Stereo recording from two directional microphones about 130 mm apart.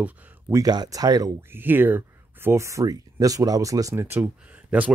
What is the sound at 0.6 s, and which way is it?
Speech, 30° right (ahead or behind).